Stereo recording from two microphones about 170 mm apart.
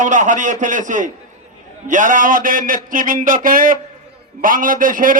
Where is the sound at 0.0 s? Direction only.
50° right (ahead or behind).